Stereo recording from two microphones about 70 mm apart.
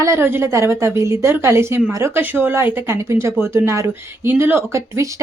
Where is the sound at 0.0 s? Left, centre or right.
Right.